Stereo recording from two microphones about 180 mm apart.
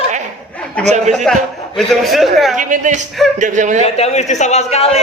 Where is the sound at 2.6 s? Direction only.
45° right (ahead or behind).